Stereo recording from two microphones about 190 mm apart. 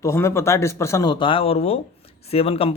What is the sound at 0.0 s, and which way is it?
Speech, 15° left (ahead or behind).